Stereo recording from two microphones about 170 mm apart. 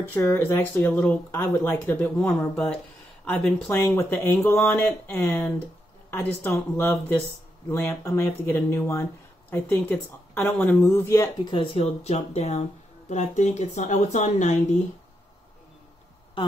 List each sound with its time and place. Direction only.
0.1 s speech: 15° left (ahead or behind)
11.5 s speech: 35° left (ahead or behind)